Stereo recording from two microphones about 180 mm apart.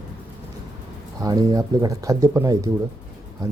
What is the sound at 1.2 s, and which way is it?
Speech, 20° right (ahead or behind).